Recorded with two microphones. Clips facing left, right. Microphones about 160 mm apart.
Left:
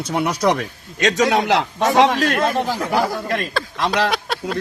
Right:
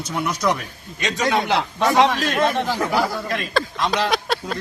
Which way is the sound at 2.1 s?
60° left (ahead or behind).